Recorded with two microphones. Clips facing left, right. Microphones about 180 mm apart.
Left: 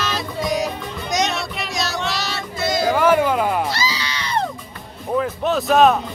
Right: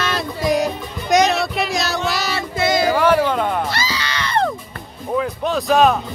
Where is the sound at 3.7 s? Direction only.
55° right (ahead or behind).